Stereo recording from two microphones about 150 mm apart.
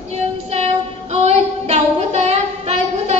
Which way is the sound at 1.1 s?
45° right (ahead or behind).